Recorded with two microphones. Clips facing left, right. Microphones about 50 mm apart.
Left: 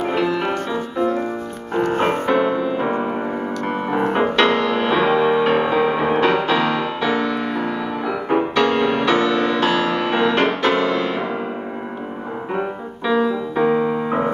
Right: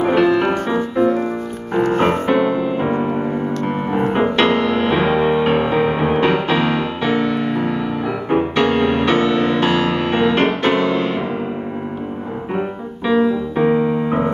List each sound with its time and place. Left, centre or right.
0.1 s music: right
1.7 s music: centre
3.0 s music: centre
12.5 s music: centre
13.6 s keyboard: centre